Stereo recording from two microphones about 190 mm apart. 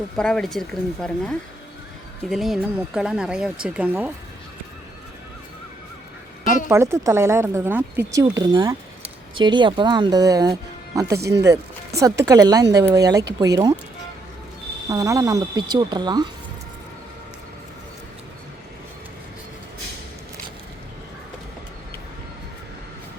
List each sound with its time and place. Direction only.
0.2 s speech: 5° left (ahead or behind)
6.7 s speech: 15° right (ahead or behind)
8.2 s speech: 20° right (ahead or behind)
14.8 s speech: 15° right (ahead or behind)